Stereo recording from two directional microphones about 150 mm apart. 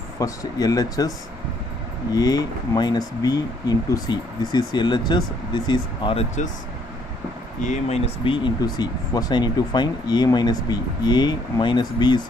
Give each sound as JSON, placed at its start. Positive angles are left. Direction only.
{"t": 0.2, "sound": "speech", "side_deg": 25}
{"t": 2.1, "sound": "speech", "side_deg": 25}
{"t": 7.6, "sound": "speech", "side_deg": 50}